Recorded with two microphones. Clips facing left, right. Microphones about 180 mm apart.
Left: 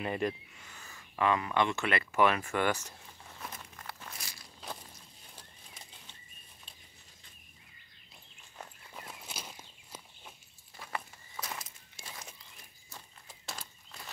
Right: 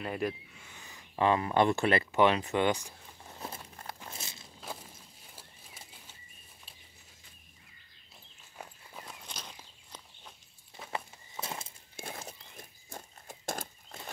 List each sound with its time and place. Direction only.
0.0 s speech: centre (ahead or behind)
0.7 s a sound: 15° right (ahead or behind)
1.1 s speech: 30° right (ahead or behind)
3.3 s walk: 30° right (ahead or behind)
5.3 s a sound: 5° right (ahead or behind)
8.5 s walk: centre (ahead or behind)
10.8 s walk: 25° right (ahead or behind)
12.0 s a sound: 55° right (ahead or behind)
12.5 s walk: 50° right (ahead or behind)